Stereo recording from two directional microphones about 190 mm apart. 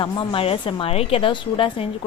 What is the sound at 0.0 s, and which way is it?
A woman's voice, 25° left (ahead or behind).